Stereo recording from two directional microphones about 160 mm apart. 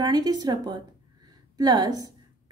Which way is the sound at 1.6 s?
25° right (ahead or behind).